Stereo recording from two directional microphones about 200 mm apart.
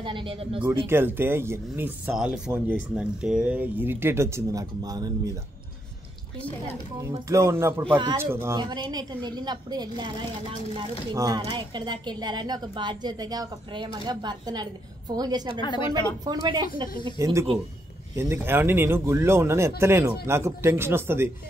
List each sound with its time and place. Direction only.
0.0 s a woman's voice: 25° right (ahead or behind)
0.8 s speech: 10° right (ahead or behind)
7.0 s a woman's voice: 15° right (ahead or behind)
8.2 s a woman's voice: 10° right (ahead or behind)
11.1 s a woman's voice: 20° right (ahead or behind)
15.6 s speech: 20° left (ahead or behind)
16.3 s a woman's voice: 20° right (ahead or behind)